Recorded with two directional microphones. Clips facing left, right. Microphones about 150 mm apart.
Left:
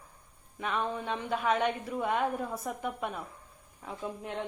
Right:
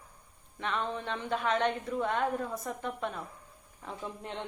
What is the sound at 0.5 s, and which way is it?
A woman's voice, 10° left (ahead or behind).